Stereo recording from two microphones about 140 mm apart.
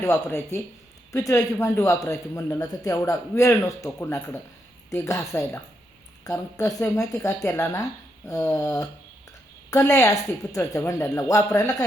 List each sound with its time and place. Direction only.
0.0 s a man's voice: 20° left (ahead or behind)